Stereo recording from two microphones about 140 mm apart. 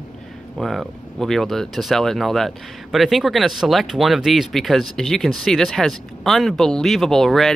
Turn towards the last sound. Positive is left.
turn(degrees=0)  # may be behind; listen again after turning